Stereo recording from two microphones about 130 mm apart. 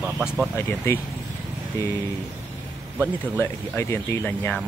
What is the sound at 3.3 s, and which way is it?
Speech, 20° left (ahead or behind).